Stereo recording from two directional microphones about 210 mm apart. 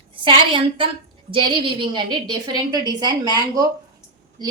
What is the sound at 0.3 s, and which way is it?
A woman's voice, 25° right (ahead or behind).